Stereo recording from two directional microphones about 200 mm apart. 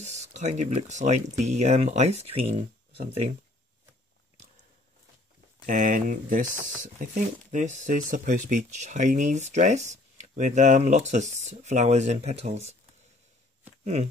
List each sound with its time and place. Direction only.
0.0 s speech: 35° right (ahead or behind)
5.7 s speech: 40° right (ahead or behind)